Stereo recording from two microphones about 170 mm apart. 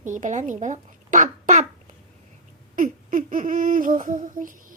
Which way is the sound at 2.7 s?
50° right (ahead or behind).